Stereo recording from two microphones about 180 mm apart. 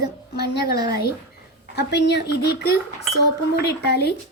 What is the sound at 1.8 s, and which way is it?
Speech, 70° left (ahead or behind).